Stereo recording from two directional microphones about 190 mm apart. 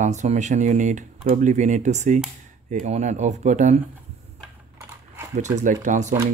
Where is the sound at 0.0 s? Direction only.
40° right (ahead or behind).